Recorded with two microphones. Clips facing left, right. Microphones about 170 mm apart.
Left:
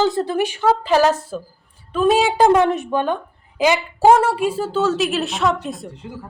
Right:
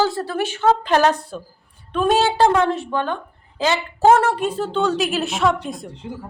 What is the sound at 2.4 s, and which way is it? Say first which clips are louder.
A woman's voice: left 2 dB; 15° left (ahead or behind).